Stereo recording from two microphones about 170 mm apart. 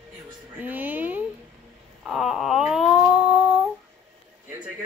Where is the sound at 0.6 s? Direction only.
10° right (ahead or behind).